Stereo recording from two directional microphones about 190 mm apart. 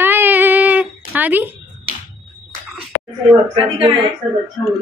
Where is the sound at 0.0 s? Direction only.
10° right (ahead or behind).